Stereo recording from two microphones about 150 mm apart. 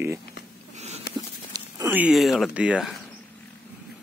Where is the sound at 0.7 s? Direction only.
50° right (ahead or behind).